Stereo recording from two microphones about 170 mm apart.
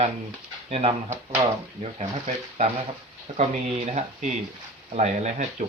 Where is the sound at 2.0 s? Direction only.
45° right (ahead or behind).